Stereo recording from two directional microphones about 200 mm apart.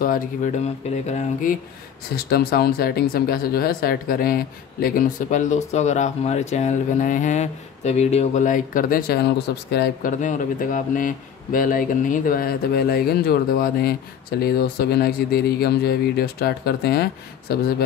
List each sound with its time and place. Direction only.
0.0 s speech: 40° left (ahead or behind)
2.2 s speech: 50° left (ahead or behind)
10.2 s speech: 40° left (ahead or behind)